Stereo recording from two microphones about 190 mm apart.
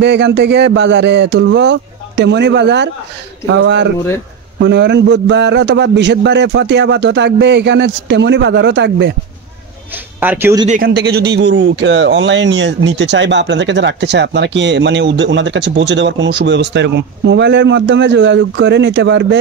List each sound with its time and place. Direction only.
0.0 s music: 65° right (ahead or behind)
3.4 s speech: 70° right (ahead or behind)
10.2 s speech: 10° right (ahead or behind)
10.7 s speech: 55° right (ahead or behind); by 19.2 s 70° right (ahead or behind)